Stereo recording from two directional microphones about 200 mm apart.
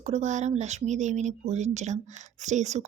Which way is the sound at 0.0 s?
35° right (ahead or behind).